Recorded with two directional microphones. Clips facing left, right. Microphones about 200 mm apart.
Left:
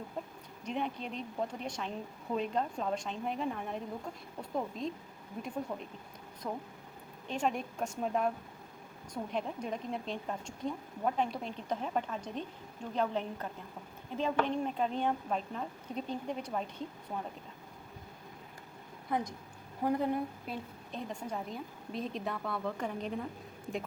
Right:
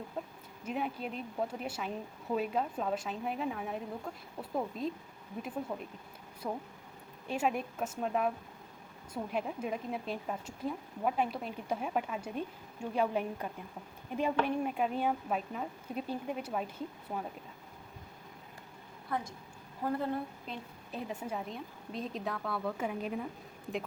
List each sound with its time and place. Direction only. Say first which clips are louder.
0.6 s a woman's voice: even; 5° right (ahead or behind)
19.1 s a woman's voice: left 3 dB; 15° left (ahead or behind)
20.9 s a woman's voice: right 1 dB; 5° right (ahead or behind)